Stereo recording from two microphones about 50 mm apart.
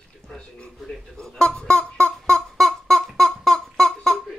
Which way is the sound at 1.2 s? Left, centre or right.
Centre.